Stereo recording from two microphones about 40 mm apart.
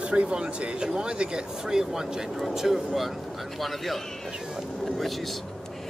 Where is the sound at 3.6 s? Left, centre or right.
Centre.